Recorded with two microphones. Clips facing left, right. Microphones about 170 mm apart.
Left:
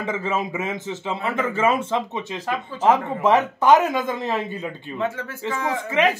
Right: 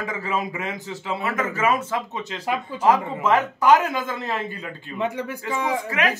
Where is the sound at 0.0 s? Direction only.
25° left (ahead or behind).